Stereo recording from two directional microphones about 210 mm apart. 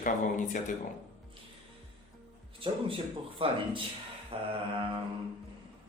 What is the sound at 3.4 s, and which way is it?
Mantra, 25° right (ahead or behind).